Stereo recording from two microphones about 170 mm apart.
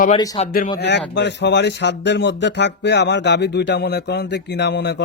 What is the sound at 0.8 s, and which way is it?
Speech, 85° left.